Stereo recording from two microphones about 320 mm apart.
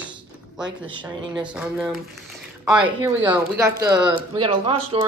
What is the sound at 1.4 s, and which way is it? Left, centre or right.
Speech, centre.